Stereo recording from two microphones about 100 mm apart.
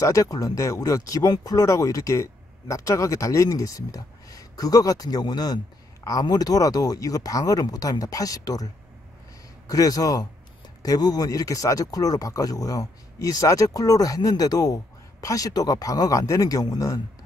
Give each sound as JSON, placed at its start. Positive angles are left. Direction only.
{"t": 0.0, "sound": "speech", "side_deg": 35}
{"t": 9.7, "sound": "speech", "side_deg": 35}